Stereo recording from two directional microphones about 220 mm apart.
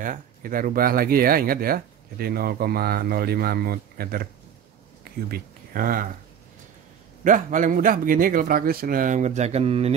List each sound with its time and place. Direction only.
0.0 s speech: 40° right (ahead or behind)
5.3 s speech: 40° right (ahead or behind)
7.2 s speech: 35° right (ahead or behind)